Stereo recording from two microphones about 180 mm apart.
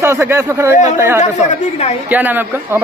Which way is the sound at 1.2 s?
40° left (ahead or behind).